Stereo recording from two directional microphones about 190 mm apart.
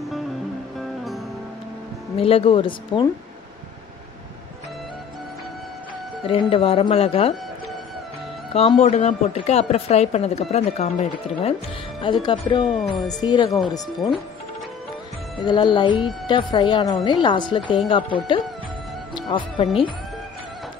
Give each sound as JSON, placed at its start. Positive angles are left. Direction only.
{"t": 0.7, "sound": "music", "side_deg": 0}
{"t": 2.1, "sound": "a woman's voice", "side_deg": 30}
{"t": 6.2, "sound": "a woman's voice", "side_deg": 30}
{"t": 8.5, "sound": "a woman's voice", "side_deg": 35}
{"t": 12.6, "sound": "speech", "side_deg": 0}
{"t": 13.2, "sound": "a woman's voice", "side_deg": 20}
{"t": 15.4, "sound": "a woman's voice", "side_deg": 25}